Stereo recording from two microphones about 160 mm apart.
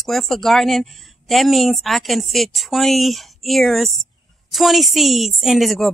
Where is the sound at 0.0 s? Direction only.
Centre (ahead or behind).